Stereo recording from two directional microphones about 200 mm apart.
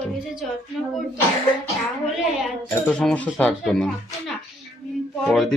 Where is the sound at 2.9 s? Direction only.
5° left (ahead or behind).